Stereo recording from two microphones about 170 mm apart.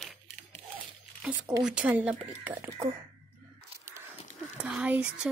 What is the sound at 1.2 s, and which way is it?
Speech, 5° right (ahead or behind).